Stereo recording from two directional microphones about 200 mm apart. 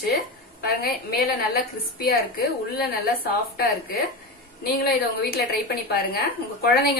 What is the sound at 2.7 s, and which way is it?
A woman's voice, 50° left (ahead or behind).